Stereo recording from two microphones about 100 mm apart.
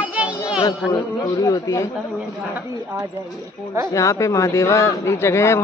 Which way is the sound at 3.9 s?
30° left (ahead or behind).